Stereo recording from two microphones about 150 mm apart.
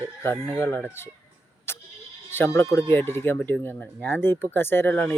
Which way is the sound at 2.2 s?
15° left (ahead or behind).